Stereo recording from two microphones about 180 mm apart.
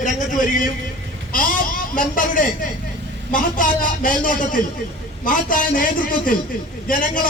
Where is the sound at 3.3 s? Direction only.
50° left (ahead or behind).